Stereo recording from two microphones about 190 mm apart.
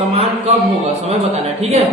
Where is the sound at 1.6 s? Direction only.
35° right (ahead or behind).